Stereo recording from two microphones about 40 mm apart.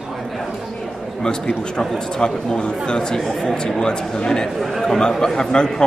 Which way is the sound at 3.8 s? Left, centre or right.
Left.